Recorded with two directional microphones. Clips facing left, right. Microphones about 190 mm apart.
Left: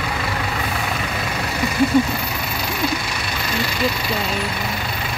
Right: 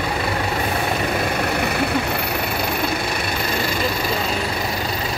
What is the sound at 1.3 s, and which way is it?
Vehicle, 55° right (ahead or behind).